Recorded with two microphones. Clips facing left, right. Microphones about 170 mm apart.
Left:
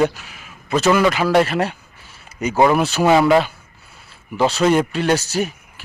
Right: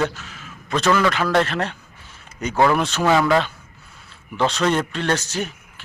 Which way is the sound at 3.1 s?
20° left (ahead or behind).